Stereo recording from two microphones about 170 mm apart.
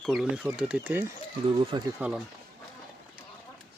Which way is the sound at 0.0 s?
Centre (ahead or behind).